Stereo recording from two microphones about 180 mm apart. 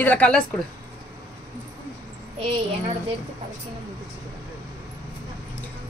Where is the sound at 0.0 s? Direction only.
10° left (ahead or behind).